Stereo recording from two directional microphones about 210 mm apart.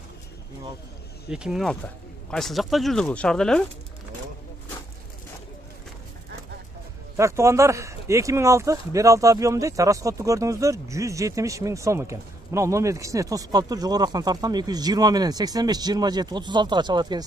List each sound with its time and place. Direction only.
1.3 s speech: 5° right (ahead or behind)
7.2 s speech: 15° right (ahead or behind)